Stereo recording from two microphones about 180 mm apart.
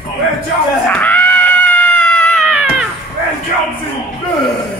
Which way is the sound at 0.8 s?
10° left (ahead or behind).